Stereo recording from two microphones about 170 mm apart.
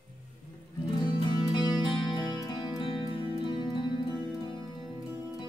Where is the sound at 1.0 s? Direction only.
25° left (ahead or behind).